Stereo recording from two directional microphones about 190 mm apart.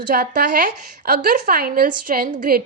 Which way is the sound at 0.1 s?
50° right (ahead or behind).